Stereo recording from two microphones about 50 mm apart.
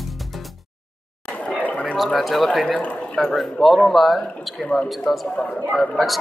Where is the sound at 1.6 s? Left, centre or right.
Left.